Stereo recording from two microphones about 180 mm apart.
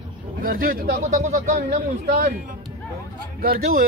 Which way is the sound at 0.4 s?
50° right (ahead or behind).